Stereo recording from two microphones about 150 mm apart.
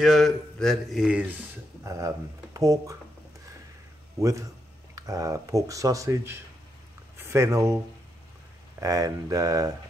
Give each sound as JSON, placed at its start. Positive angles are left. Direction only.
{"t": 0.0, "sound": "speech", "side_deg": 0}
{"t": 1.9, "sound": "speech", "side_deg": -20}
{"t": 4.2, "sound": "speech", "side_deg": -20}
{"t": 8.8, "sound": "speech", "side_deg": -25}